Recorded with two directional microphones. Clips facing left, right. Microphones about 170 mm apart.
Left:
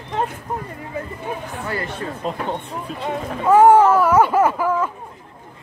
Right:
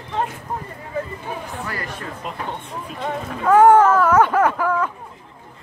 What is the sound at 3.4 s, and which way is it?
Speech, 10° left (ahead or behind).